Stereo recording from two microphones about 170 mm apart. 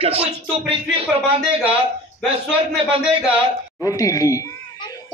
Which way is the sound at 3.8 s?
20° left (ahead or behind).